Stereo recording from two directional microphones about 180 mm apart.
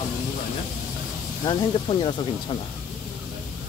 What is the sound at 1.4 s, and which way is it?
Speech, 25° left (ahead or behind).